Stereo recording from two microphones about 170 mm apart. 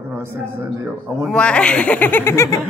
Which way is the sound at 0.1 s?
15° right (ahead or behind).